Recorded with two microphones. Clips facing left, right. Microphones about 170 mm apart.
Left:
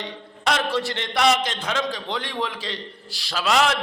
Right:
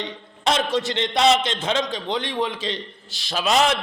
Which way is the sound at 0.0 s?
20° right (ahead or behind).